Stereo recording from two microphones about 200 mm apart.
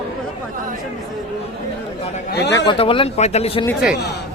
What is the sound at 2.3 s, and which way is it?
Speech, 55° left (ahead or behind).